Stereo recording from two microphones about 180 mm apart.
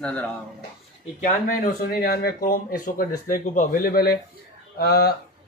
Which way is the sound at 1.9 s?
55° left (ahead or behind).